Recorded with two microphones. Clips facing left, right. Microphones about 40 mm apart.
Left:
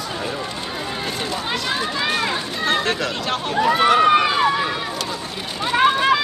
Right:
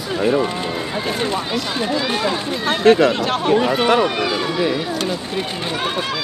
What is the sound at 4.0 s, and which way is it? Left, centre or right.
Speech, left.